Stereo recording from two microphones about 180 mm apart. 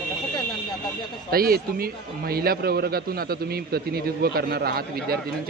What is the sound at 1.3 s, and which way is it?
Speech, 55° right (ahead or behind).